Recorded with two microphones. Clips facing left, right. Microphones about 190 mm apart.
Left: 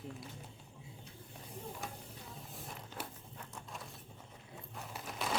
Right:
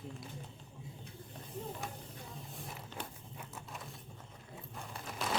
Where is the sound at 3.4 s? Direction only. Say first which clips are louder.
Right 1 dB; 5° right (ahead or behind).